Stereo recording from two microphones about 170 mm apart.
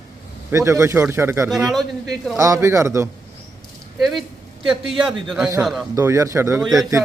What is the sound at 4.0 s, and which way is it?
A man's voice, centre (ahead or behind).